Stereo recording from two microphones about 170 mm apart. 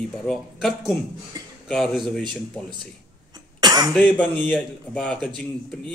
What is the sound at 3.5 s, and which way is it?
Cough, 25° right (ahead or behind).